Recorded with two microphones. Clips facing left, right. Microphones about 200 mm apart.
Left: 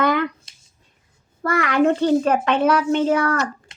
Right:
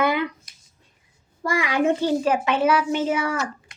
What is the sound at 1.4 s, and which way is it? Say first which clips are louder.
A woman's voice: left 3 dB; 10° right (ahead or behind).